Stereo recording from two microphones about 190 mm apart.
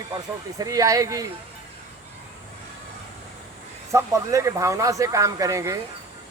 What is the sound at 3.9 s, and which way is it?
Speech, 15° right (ahead or behind).